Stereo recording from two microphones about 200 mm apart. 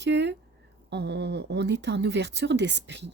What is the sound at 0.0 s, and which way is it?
A woman's voice, 60° right (ahead or behind).